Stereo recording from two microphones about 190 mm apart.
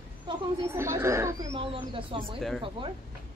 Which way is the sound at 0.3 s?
25° right (ahead or behind).